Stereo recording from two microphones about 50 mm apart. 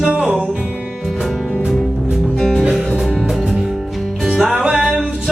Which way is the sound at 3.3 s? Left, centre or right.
Centre.